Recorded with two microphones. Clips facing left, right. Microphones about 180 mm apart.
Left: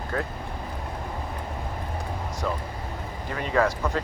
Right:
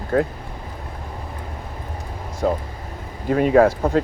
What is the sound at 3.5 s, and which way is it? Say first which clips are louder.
Speech: right 7 dB; 55° right (ahead or behind).